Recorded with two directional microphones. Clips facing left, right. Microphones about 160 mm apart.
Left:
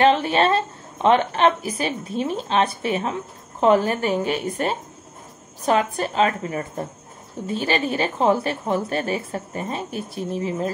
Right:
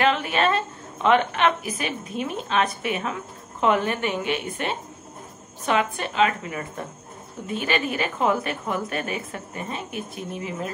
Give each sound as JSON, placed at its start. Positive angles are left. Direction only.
{"t": 0.0, "sound": "a woman's voice", "side_deg": 30}